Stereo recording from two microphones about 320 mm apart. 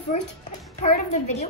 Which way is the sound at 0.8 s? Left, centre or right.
Left.